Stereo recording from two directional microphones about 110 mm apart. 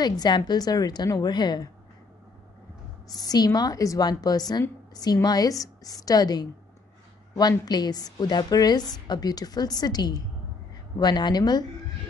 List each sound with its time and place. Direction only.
0.0 s a woman's voice: 40° left (ahead or behind)
3.1 s a woman's voice: 35° left (ahead or behind)